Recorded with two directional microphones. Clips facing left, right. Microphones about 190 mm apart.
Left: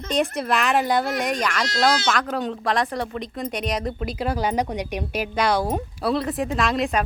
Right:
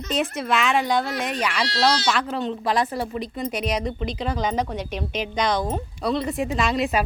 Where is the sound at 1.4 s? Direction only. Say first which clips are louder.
Even; 10° right (ahead or behind).